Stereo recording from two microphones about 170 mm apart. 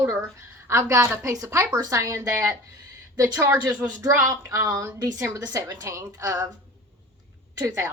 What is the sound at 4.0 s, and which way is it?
A woman's voice, 20° right (ahead or behind).